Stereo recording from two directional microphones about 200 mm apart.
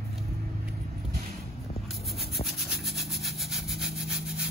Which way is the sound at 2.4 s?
Centre (ahead or behind).